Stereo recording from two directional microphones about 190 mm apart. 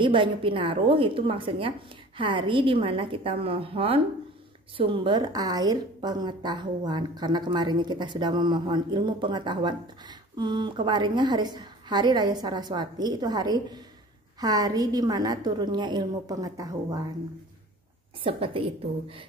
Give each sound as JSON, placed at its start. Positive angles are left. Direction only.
{"t": 0.0, "sound": "a woman's voice", "side_deg": -25}
{"t": 18.2, "sound": "a woman's voice", "side_deg": -30}